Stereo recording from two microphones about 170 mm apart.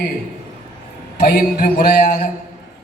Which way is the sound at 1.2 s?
60° left (ahead or behind).